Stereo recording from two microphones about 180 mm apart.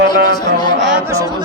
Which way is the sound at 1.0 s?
20° right (ahead or behind).